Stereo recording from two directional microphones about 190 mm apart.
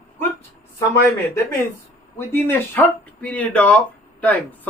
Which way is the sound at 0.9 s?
15° left (ahead or behind).